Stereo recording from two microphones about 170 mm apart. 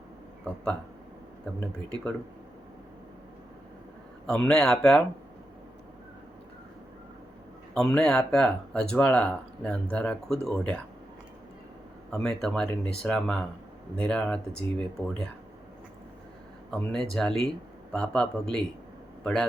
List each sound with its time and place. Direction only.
0.4 s speech: 5° left (ahead or behind)
4.3 s speech: 5° left (ahead or behind)
7.7 s speech: 5° left (ahead or behind)
12.1 s speech: 5° left (ahead or behind)
16.7 s speech: centre (ahead or behind)